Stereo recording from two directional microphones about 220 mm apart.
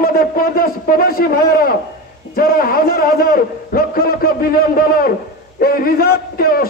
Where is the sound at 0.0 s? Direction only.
40° left (ahead or behind).